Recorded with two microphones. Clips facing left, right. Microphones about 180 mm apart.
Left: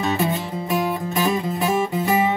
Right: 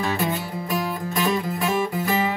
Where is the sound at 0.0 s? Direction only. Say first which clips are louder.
Left 3 dB; 25° left (ahead or behind).